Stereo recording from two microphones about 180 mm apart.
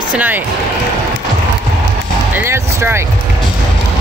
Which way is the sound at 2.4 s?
15° right (ahead or behind).